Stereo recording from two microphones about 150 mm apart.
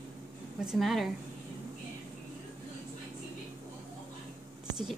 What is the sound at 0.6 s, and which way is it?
Speech, centre (ahead or behind).